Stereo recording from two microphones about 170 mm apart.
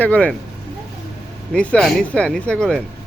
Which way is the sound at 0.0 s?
10° left (ahead or behind).